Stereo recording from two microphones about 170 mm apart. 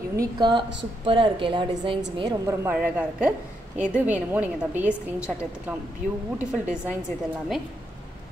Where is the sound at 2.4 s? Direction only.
15° right (ahead or behind).